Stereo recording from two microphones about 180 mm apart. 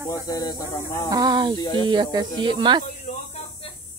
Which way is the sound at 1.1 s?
25° right (ahead or behind).